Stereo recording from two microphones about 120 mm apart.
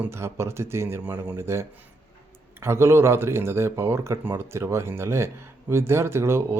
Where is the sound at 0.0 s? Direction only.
20° right (ahead or behind).